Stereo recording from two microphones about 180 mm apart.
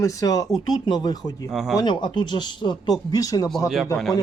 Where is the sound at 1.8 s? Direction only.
25° left (ahead or behind).